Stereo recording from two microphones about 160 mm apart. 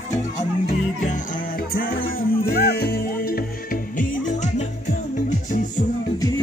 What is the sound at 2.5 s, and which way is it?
Music, 75° left (ahead or behind).